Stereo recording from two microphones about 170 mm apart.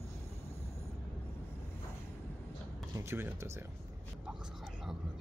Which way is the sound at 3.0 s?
15° right (ahead or behind).